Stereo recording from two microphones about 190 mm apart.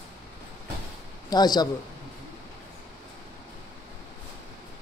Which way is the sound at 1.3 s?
20° left (ahead or behind).